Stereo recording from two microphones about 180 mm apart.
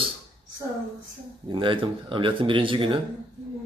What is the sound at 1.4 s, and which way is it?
Speech, 25° right (ahead or behind).